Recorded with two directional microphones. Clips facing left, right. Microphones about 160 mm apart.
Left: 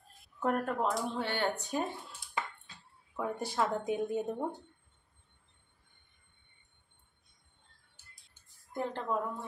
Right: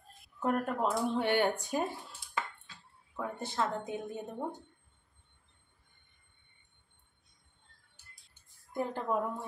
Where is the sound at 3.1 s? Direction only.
10° left (ahead or behind).